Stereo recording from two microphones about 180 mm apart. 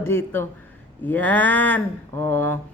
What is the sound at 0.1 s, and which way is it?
A woman's voice, 10° left (ahead or behind).